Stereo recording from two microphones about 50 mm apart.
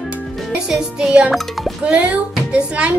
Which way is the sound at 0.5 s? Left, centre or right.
Centre.